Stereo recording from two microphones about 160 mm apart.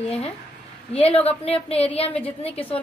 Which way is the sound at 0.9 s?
40° left (ahead or behind).